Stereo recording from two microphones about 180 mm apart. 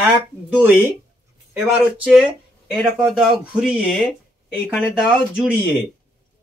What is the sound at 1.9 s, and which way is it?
Speech, 5° right (ahead or behind).